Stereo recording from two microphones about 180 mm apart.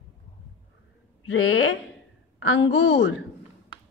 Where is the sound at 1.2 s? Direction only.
90° left.